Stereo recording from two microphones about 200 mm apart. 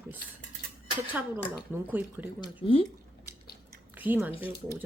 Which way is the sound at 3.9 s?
10° right (ahead or behind).